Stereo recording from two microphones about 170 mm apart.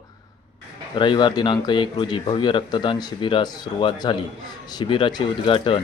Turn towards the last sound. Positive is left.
turn(degrees=30)  # may be behind; listen again after turning